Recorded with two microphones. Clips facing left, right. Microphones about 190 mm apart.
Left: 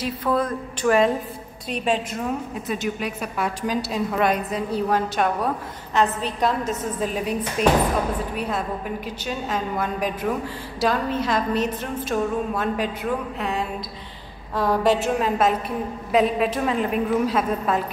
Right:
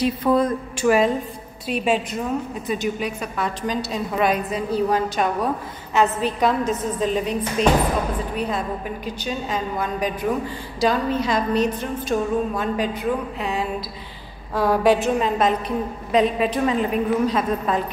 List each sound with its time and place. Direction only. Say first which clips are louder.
0.0 s speech: right 4 dB; 20° right (ahead or behind)
0.7 s a woman's voice: even; 5° right (ahead or behind)